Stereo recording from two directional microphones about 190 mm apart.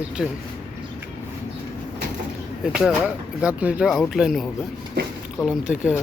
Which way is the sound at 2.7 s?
5° right (ahead or behind).